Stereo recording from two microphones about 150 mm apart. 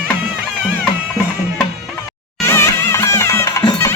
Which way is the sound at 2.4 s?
20° left (ahead or behind).